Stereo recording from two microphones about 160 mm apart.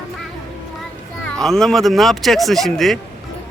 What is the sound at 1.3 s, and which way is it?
Speech, 5° left (ahead or behind).